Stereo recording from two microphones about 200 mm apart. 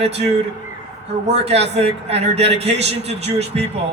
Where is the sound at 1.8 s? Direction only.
30° right (ahead or behind).